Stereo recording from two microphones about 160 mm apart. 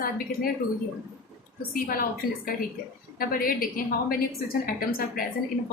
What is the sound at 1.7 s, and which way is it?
Speech, 65° left (ahead or behind).